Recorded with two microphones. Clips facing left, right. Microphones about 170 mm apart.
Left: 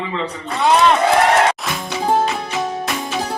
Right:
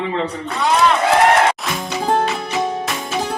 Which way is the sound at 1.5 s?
Centre (ahead or behind).